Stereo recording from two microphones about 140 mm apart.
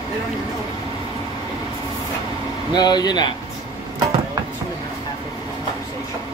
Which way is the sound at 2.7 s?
30° left (ahead or behind).